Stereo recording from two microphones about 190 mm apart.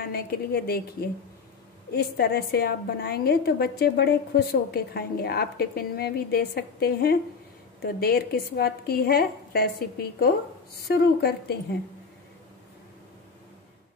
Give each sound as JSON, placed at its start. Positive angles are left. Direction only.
{"t": 0.0, "sound": "a woman's voice", "side_deg": 55}
{"t": 1.9, "sound": "a woman's voice", "side_deg": 55}